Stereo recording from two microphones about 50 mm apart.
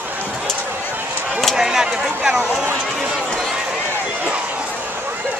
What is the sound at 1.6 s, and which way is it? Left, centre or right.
Speech, centre.